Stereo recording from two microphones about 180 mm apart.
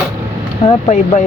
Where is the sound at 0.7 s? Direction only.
40° left (ahead or behind).